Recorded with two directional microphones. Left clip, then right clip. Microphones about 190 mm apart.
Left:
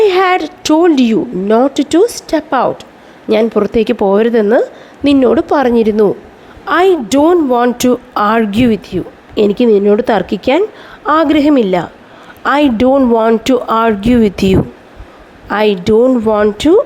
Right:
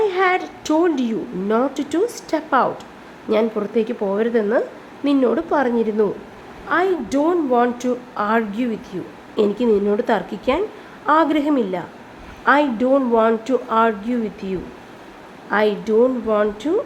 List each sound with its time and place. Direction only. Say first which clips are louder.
0.0 s a woman's voice: left 8 dB; 45° left (ahead or behind); by 14.5 s 60° left (ahead or behind)
15.4 s a woman's voice: left 7 dB; 45° left (ahead or behind)